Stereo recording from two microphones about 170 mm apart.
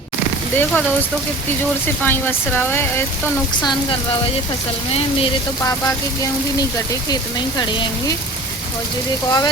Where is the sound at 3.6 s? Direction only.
30° left (ahead or behind).